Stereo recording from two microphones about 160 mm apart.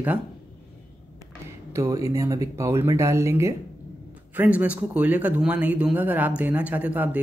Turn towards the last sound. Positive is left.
turn(degrees=-10)  # may be behind; listen again after turning